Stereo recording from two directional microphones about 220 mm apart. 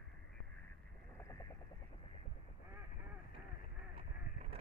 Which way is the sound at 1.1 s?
15° left (ahead or behind).